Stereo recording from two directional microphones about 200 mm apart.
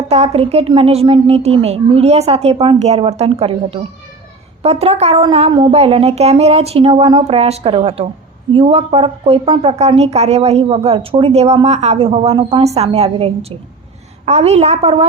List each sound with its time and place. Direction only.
0.1 s speech: 30° right (ahead or behind)